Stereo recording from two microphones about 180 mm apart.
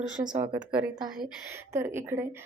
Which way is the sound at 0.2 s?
25° right (ahead or behind).